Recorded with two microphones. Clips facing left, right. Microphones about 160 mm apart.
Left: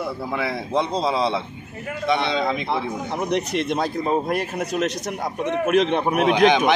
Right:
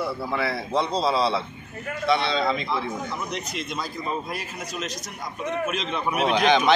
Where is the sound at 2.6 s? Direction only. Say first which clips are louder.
Left 3 dB; 65° left (ahead or behind).